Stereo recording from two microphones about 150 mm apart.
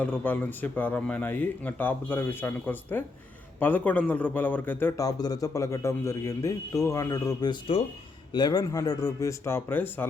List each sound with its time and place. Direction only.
0.0 s a man's voice: 10° left (ahead or behind)